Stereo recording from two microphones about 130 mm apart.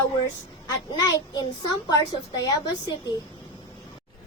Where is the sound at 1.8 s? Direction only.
30° left (ahead or behind).